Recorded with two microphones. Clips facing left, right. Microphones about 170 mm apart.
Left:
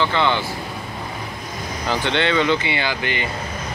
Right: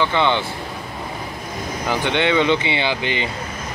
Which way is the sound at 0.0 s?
15° right (ahead or behind).